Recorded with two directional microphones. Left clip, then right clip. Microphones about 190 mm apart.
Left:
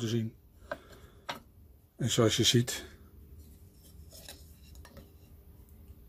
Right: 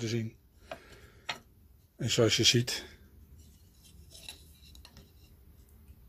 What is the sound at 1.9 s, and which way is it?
Speech, 15° left (ahead or behind).